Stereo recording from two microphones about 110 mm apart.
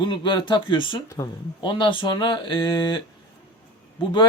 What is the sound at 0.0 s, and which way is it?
Speech, 45° left (ahead or behind).